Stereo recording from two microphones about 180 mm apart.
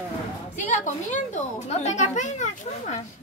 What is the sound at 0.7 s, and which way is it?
A woman's voice, 45° left (ahead or behind).